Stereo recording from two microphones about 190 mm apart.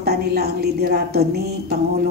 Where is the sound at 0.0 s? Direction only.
55° right (ahead or behind).